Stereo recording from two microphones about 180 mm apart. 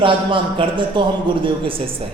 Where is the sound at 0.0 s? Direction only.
25° right (ahead or behind).